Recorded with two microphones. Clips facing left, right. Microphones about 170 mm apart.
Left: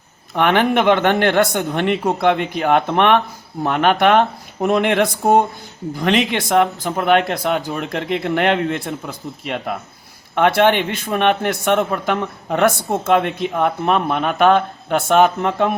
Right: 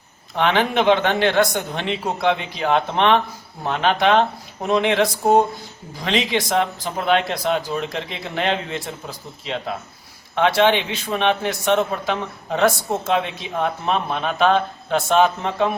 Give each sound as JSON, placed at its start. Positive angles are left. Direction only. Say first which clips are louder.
{"t": 0.3, "sound": "a man's voice", "louder": "left 3 dB", "side_deg": 55}